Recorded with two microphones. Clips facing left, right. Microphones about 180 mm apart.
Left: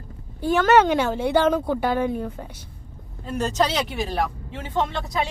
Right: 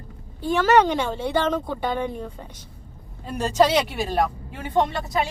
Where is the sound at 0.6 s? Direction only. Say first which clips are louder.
Left 1 dB; 5° left (ahead or behind).